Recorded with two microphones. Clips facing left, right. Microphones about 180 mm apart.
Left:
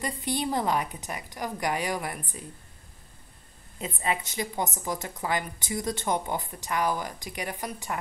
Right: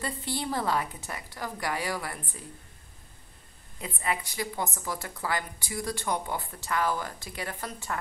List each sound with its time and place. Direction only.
0.0 s a woman's voice: 15° left (ahead or behind)
3.8 s a woman's voice: 20° left (ahead or behind)